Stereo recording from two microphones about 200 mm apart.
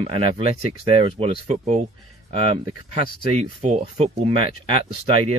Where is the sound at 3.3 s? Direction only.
30° right (ahead or behind).